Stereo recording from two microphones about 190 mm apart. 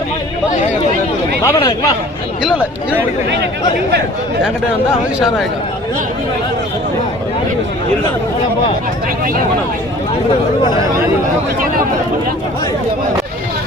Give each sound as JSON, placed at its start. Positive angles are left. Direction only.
{"t": 1.5, "sound": "speech", "side_deg": 20}
{"t": 10.6, "sound": "speech", "side_deg": 25}